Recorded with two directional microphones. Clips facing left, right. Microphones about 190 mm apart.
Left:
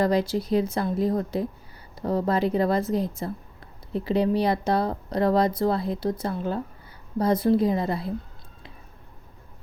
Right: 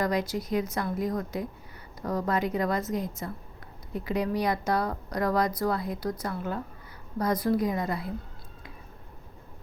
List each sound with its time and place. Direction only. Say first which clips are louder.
0.0 s a woman's voice: left 5 dB; 30° left (ahead or behind)